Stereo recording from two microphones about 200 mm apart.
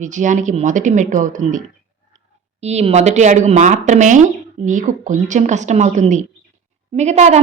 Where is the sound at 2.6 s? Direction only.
30° right (ahead or behind).